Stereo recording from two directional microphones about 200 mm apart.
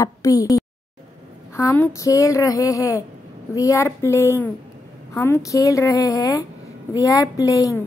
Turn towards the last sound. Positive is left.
turn(degrees=15)  # may be behind; listen again after turning